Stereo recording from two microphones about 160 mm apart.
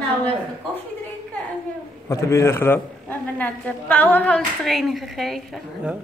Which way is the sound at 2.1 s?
15° left (ahead or behind).